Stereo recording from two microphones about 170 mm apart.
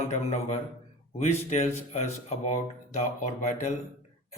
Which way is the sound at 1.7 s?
40° left (ahead or behind).